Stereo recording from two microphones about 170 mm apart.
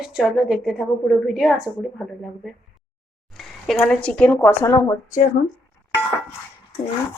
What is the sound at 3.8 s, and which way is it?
Speech, 5° left (ahead or behind).